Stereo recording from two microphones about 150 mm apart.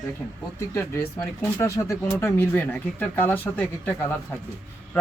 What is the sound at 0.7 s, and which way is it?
Speech, 15° left (ahead or behind).